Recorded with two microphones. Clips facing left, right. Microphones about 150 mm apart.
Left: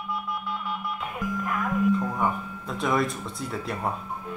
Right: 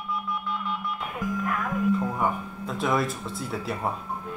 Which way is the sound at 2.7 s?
Centre (ahead or behind).